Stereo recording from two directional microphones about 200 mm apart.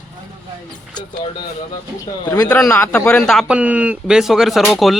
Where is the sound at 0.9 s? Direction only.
20° left (ahead or behind).